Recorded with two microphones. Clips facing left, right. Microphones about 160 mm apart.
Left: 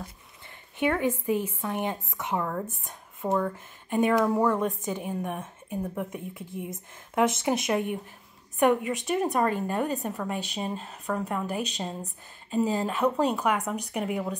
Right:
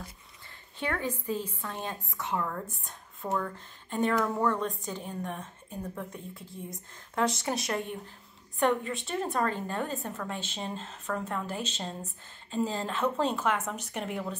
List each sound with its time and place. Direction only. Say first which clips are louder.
0.7 s a woman's voice: left 7 dB; 20° left (ahead or behind)